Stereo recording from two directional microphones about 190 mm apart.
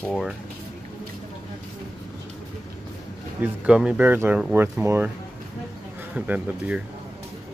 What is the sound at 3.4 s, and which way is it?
Speech, 5° right (ahead or behind).